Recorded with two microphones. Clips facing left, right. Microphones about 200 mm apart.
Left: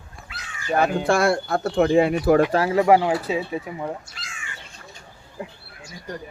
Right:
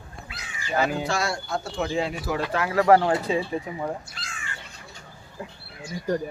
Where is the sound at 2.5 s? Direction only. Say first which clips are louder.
Left 4 dB; 30° left (ahead or behind).